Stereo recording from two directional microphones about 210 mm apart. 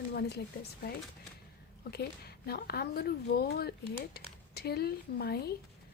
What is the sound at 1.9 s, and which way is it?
Speech, 50° left (ahead or behind).